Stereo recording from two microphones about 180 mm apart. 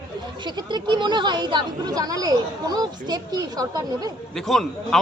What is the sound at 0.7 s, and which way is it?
Speech, 25° right (ahead or behind).